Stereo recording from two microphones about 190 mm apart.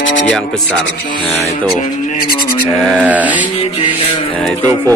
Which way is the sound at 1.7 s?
40° left (ahead or behind).